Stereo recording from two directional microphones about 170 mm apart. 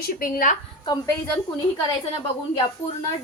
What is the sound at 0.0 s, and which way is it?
Speech, 55° left (ahead or behind).